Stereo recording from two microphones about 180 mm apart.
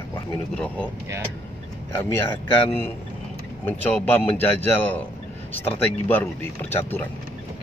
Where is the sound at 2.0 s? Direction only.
10° left (ahead or behind).